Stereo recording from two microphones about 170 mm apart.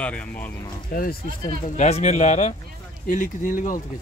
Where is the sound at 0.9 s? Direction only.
55° left (ahead or behind).